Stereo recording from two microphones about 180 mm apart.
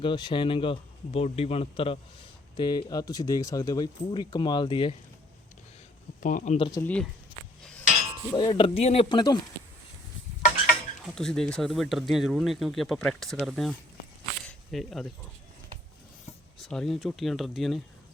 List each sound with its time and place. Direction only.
0.0 s speech: 25° left (ahead or behind)
6.1 s speech: 50° left (ahead or behind)
6.6 s speech: 20° left (ahead or behind)
6.8 s speech: 5° left (ahead or behind)
7.6 s a sound: 5° left (ahead or behind)
8.3 s speech: 25° left (ahead or behind)
11.1 s speech: 5° left (ahead or behind)
14.4 s a sound: centre (ahead or behind)
16.6 s speech: centre (ahead or behind)